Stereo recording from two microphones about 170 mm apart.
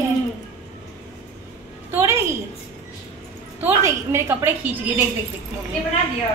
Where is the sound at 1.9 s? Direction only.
15° right (ahead or behind).